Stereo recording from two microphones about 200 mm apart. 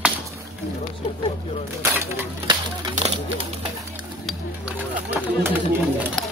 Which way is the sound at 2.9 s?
35° right (ahead or behind).